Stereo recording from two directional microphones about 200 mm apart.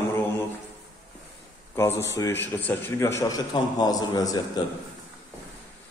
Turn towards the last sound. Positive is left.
turn(degrees=20)  # may be behind; listen again after turning